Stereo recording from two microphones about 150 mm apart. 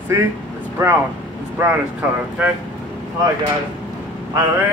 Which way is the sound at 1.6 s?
10° right (ahead or behind).